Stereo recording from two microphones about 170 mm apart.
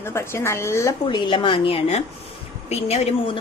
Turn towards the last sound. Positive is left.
turn(degrees=40)  # may be behind; listen again after turning